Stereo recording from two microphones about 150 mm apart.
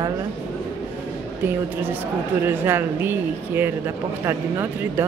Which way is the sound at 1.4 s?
10° right (ahead or behind).